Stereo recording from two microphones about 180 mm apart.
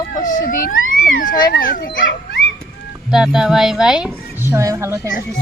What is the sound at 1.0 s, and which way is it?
Speech, 50° left (ahead or behind).